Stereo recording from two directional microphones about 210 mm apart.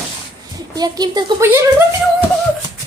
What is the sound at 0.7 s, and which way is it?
Speech, 20° right (ahead or behind).